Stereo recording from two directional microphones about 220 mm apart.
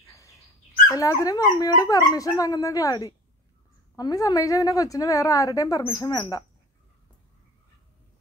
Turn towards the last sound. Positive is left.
turn(degrees=15)  # may be behind; listen again after turning